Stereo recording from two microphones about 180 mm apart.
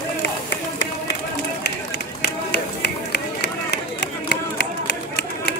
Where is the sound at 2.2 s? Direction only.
65° left (ahead or behind).